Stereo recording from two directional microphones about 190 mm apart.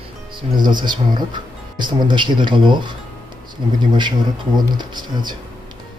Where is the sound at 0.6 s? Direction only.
25° right (ahead or behind).